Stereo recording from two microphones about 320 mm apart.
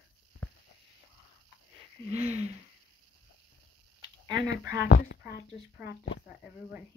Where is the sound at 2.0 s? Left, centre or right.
Right.